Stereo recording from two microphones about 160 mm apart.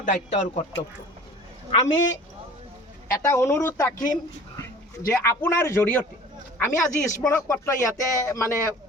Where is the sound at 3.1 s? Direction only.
15° left (ahead or behind).